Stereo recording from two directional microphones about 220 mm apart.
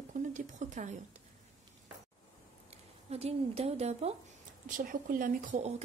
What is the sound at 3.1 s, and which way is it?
A woman's voice, 30° right (ahead or behind).